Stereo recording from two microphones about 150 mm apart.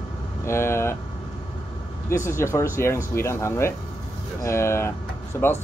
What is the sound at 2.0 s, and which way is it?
Speech, 20° left (ahead or behind).